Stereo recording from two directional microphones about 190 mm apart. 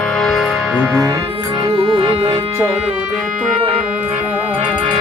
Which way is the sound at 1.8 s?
25° right (ahead or behind).